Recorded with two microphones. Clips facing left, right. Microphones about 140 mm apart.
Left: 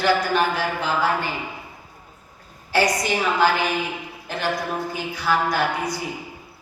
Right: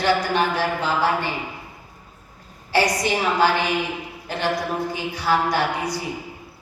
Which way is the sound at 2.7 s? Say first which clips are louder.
Even; 35° right (ahead or behind).